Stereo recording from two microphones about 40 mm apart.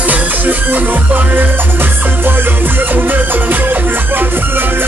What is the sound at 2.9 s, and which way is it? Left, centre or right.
Music, right.